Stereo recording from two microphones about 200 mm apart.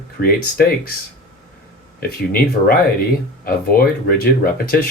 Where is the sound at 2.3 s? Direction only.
50° left (ahead or behind).